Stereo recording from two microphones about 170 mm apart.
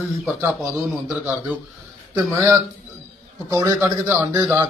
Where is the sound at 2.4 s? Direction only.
20° right (ahead or behind).